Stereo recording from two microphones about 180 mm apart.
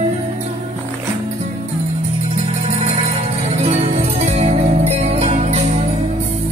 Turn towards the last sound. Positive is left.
turn(degrees=-35)  # may be behind; listen again after turning